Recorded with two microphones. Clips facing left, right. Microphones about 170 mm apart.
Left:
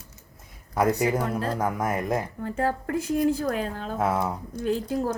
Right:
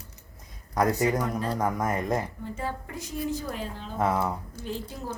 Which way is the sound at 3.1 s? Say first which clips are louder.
Left 7 dB; 55° left (ahead or behind).